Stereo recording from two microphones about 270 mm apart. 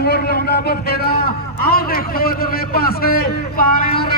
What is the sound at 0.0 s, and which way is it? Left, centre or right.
A man's voice, left.